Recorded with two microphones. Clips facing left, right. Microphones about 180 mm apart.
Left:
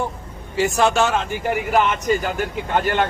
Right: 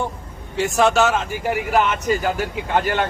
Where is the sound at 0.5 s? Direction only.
Centre (ahead or behind).